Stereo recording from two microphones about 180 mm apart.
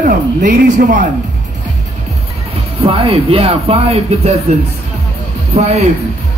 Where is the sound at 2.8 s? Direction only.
30° right (ahead or behind).